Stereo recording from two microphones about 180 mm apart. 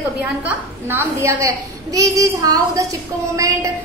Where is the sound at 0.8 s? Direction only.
15° right (ahead or behind).